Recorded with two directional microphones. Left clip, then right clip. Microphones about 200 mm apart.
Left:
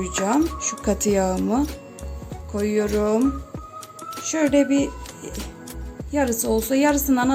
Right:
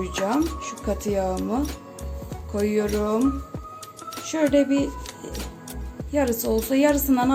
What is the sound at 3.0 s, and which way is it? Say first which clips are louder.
Speech: left 2 dB; 15° left (ahead or behind).